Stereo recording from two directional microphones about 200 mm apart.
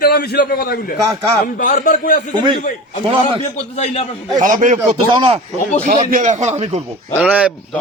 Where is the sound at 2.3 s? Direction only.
25° right (ahead or behind).